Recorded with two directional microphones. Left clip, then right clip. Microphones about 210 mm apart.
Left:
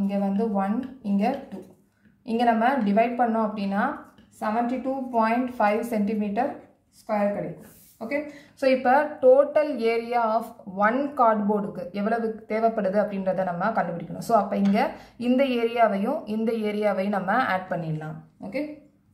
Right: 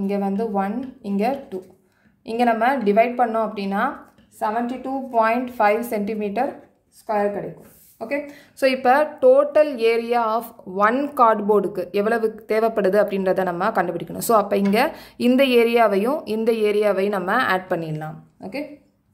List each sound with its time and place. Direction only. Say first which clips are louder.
0.0 s a woman's voice: right 3 dB; 50° right (ahead or behind)
2.2 s a woman's voice: right 3 dB; 50° right (ahead or behind)
8.1 s a woman's voice: right 2 dB; 50° right (ahead or behind)